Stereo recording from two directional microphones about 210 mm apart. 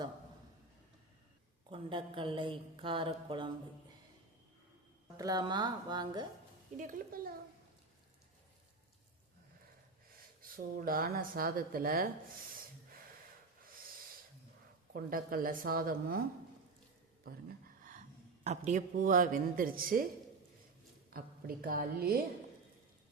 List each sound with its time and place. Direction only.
1.7 s speech: 25° right (ahead or behind)
5.1 s speech: 20° right (ahead or behind)
6.7 s speech: 40° right (ahead or behind)
10.8 s speech: 45° right (ahead or behind)
14.9 s speech: 45° right (ahead or behind)
17.2 s speech: 45° right (ahead or behind)
18.4 s speech: 30° right (ahead or behind)
21.1 s speech: 45° right (ahead or behind)